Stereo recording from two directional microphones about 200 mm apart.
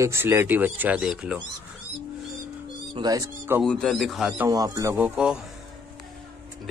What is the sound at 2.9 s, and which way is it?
Speech, 20° right (ahead or behind).